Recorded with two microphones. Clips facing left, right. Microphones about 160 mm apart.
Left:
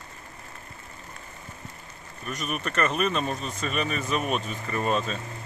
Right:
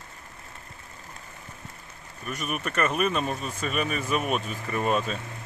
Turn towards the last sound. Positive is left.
turn(degrees=-5)  # may be behind; listen again after turning